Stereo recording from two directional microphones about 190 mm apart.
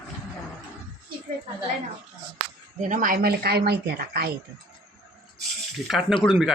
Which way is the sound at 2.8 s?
45° right (ahead or behind).